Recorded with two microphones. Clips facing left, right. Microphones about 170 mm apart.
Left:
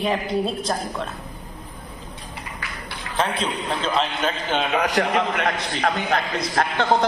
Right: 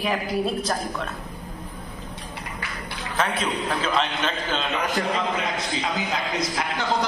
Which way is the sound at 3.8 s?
Centre (ahead or behind).